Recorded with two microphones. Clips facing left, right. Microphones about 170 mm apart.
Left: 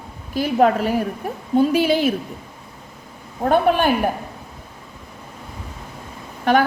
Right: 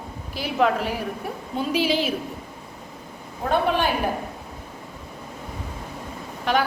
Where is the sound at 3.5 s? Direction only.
50° left (ahead or behind).